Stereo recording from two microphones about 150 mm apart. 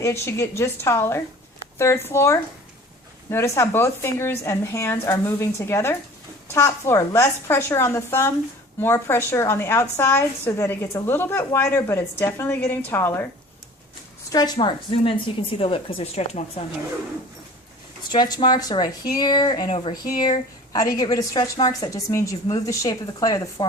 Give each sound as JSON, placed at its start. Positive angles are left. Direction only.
{"t": 0.0, "sound": "a woman's voice", "side_deg": 15}
{"t": 14.3, "sound": "a woman's voice", "side_deg": 30}
{"t": 18.1, "sound": "a woman's voice", "side_deg": 30}